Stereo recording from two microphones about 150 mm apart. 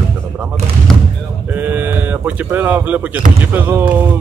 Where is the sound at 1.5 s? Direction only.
10° right (ahead or behind).